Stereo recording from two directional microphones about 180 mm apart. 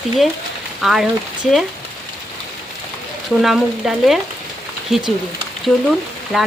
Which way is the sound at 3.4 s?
Centre (ahead or behind).